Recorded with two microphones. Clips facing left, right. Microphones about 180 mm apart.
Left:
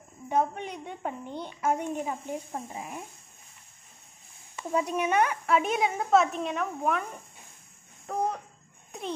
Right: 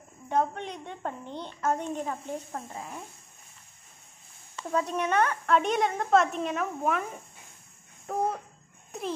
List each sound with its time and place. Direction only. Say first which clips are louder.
0.3 s a woman's voice: even; 10° left (ahead or behind)
4.6 s a woman's voice: left 1 dB; 10° left (ahead or behind)
8.1 s a sound: right 1 dB; 5° right (ahead or behind)